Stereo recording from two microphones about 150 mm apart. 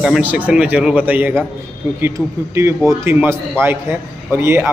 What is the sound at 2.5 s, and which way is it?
A man's voice, 20° right (ahead or behind).